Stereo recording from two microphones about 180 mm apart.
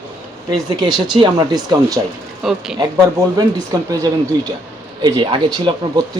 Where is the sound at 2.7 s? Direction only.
20° right (ahead or behind).